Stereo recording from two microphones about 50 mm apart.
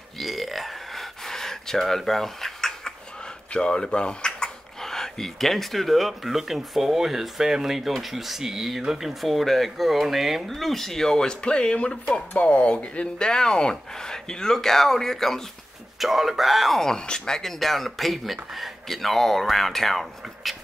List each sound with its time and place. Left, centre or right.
0.2 s gasp: centre
3.5 s speech: centre
9.2 s speech: centre
16.0 s speech: centre